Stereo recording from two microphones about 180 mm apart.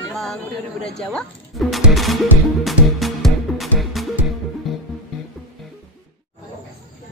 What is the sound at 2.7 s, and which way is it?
Music, centre (ahead or behind).